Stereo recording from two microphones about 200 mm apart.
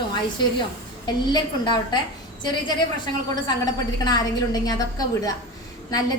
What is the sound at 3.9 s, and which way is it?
A woman's voice, 20° left (ahead or behind).